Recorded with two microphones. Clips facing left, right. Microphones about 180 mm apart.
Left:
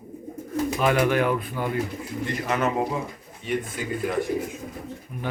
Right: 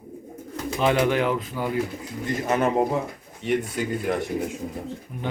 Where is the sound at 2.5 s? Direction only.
30° right (ahead or behind).